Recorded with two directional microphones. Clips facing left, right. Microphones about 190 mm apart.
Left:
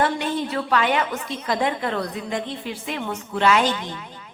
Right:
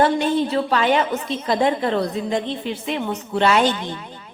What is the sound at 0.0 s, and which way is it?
A woman's voice, 30° right (ahead or behind).